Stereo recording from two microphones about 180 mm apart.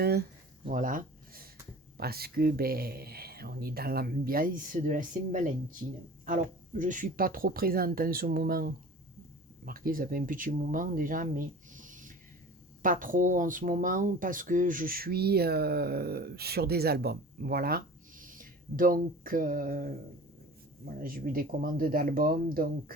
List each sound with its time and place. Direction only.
0.0 s speech: 65° right (ahead or behind)
0.7 s a sound: 50° right (ahead or behind)
2.0 s speech: 60° right (ahead or behind)